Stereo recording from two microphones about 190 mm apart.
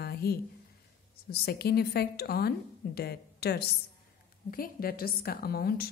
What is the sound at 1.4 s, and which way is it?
A woman's voice, 55° left (ahead or behind).